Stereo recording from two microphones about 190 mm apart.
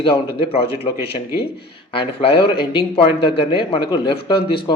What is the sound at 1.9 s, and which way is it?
Speech, 30° left (ahead or behind).